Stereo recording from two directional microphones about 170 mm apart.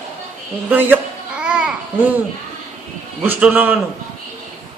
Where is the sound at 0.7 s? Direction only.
10° right (ahead or behind).